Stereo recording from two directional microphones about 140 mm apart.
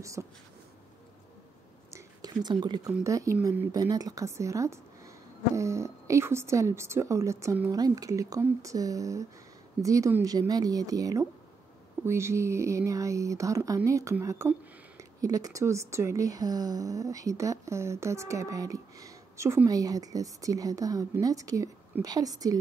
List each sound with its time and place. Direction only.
0.2 s speech: 15° right (ahead or behind)
2.0 s a sound: 30° right (ahead or behind)
3.0 s speech: 20° right (ahead or behind)